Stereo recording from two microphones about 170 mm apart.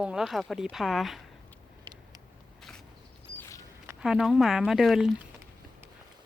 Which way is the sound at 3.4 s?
20° left (ahead or behind).